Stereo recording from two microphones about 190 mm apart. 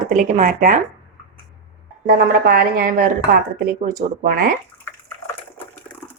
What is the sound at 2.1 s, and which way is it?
A woman's voice, 50° right (ahead or behind).